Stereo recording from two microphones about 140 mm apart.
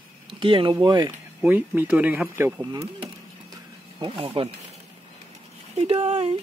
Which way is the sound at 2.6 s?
25° right (ahead or behind).